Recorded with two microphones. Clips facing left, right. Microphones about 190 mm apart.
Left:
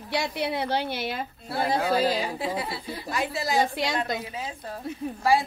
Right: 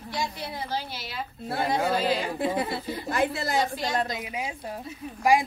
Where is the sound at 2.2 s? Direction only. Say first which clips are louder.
Right 2 dB; 50° right (ahead or behind).